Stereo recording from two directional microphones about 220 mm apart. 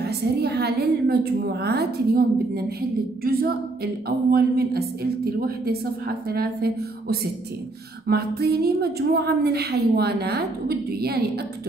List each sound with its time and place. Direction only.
0.0 s a woman's voice: 50° right (ahead or behind)